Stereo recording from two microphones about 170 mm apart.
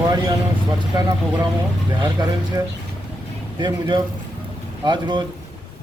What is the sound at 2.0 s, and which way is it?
A man's voice, 25° right (ahead or behind).